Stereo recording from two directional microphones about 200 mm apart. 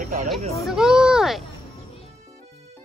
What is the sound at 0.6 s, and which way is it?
Speech, 5° right (ahead or behind).